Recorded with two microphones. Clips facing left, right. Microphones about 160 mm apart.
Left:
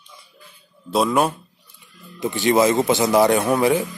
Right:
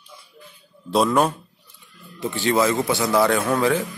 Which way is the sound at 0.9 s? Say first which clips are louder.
Even; centre (ahead or behind).